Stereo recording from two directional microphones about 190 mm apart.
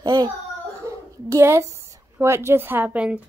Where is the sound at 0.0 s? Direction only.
20° right (ahead or behind).